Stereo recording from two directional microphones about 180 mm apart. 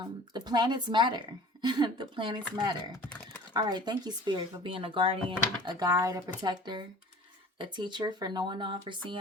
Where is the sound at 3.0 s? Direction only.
10° left (ahead or behind).